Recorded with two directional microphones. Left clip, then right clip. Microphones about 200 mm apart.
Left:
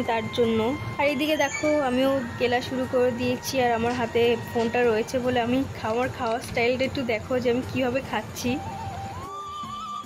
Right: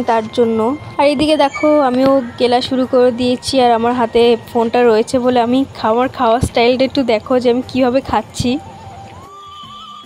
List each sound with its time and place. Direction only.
0.0 s speech: 20° right (ahead or behind)
0.9 s a woman's voice: 35° right (ahead or behind)